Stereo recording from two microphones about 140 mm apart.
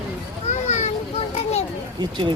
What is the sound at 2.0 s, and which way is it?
Speech, 35° right (ahead or behind).